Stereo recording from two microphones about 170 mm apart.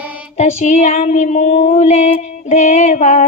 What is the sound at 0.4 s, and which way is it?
Child singing, 40° left (ahead or behind).